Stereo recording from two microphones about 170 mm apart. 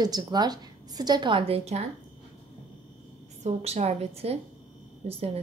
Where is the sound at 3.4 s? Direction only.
40° right (ahead or behind).